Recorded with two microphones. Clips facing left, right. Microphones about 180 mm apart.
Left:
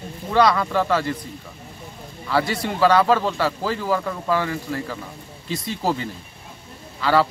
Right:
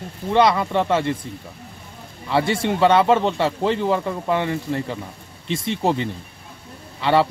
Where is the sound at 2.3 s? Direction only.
25° right (ahead or behind).